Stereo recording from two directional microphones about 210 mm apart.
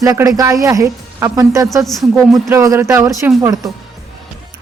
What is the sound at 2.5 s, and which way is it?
Speech, 15° right (ahead or behind).